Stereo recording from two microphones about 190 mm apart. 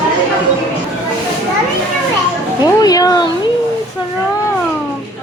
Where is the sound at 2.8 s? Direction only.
20° left (ahead or behind).